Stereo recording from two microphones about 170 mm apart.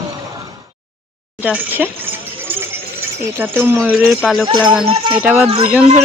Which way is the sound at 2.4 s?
10° right (ahead or behind).